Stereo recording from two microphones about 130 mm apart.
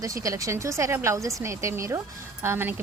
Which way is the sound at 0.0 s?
25° right (ahead or behind).